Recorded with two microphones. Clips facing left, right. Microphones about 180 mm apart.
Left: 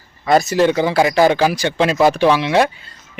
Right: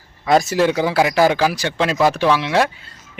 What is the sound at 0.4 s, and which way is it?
Speech, 10° right (ahead or behind).